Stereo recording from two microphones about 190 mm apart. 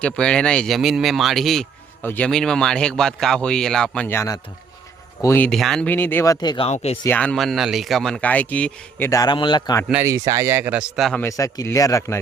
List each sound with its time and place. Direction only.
0.0 s speech: 5° left (ahead or behind); by 6.7 s 20° left (ahead or behind)
7.0 s speech: 10° left (ahead or behind)
9.9 s speech: 15° right (ahead or behind)
11.2 s speech: 15° left (ahead or behind)